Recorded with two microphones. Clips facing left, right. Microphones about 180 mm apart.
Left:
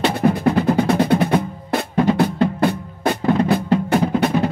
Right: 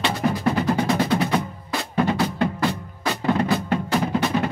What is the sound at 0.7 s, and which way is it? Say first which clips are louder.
Percussion: left 5 dB; 55° left (ahead or behind).